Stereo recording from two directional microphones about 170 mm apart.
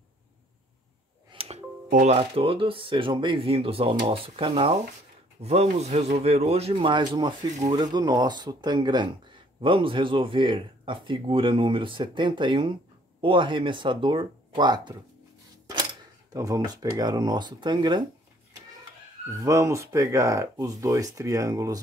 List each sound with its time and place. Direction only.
1.3 s music: 35° right (ahead or behind)
1.9 s speech: 45° right (ahead or behind); by 15.0 s 25° right (ahead or behind)
16.3 s speech: 20° right (ahead or behind)
19.4 s speech: 15° right (ahead or behind)